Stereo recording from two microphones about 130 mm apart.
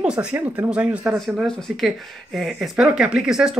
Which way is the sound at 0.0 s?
5° right (ahead or behind).